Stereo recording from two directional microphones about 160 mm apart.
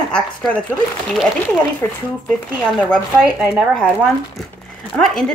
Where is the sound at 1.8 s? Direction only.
15° left (ahead or behind).